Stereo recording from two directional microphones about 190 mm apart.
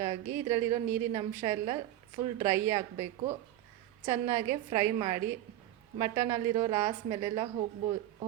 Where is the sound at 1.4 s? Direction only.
25° right (ahead or behind).